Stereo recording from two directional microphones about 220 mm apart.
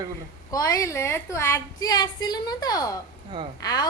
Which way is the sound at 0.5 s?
15° left (ahead or behind).